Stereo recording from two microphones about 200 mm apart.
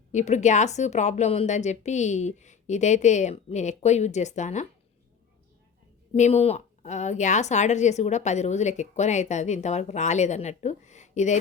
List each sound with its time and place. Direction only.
0.1 s a woman's voice: 35° left (ahead or behind)
6.1 s a woman's voice: 35° left (ahead or behind)